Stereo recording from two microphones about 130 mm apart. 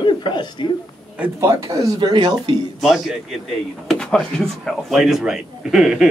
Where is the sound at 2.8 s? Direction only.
Centre (ahead or behind).